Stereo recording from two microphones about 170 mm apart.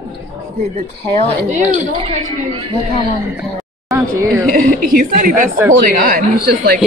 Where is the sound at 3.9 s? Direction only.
15° right (ahead or behind).